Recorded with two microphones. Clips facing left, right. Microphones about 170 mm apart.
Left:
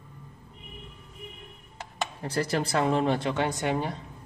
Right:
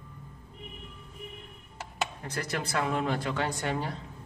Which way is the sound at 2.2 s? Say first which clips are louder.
Left 6 dB; 30° left (ahead or behind).